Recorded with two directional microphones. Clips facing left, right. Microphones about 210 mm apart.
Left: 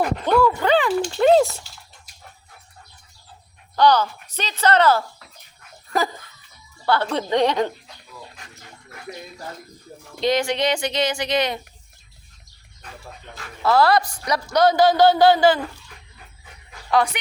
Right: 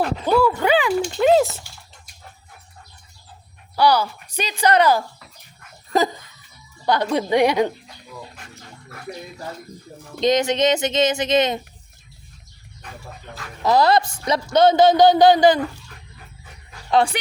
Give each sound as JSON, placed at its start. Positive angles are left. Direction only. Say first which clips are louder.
{"t": 0.0, "sound": "speech", "louder": "even", "side_deg": -5}
{"t": 3.8, "sound": "speech", "louder": "left 1 dB", "side_deg": -10}
{"t": 6.8, "sound": "speech", "louder": "right 2 dB", "side_deg": -15}
{"t": 10.2, "sound": "a man's voice", "louder": "right 3 dB", "side_deg": -20}
{"t": 13.6, "sound": "a man's voice", "louder": "right 1 dB", "side_deg": -20}
{"t": 16.9, "sound": "a man's voice", "louder": "right 2 dB", "side_deg": -30}